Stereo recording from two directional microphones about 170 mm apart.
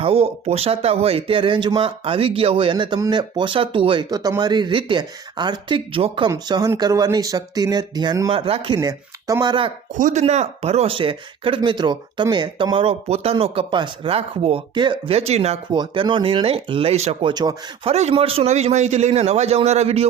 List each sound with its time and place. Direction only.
0.0 s speech: 35° right (ahead or behind)
6.3 s speech: 20° right (ahead or behind)
9.9 s speech: 45° right (ahead or behind)
15.7 s speech: 25° right (ahead or behind)
17.3 s speech: 25° right (ahead or behind)
17.9 s speech: 35° right (ahead or behind)